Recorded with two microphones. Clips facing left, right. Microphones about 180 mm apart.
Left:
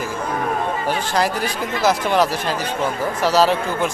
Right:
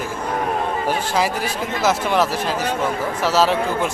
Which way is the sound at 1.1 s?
5° right (ahead or behind).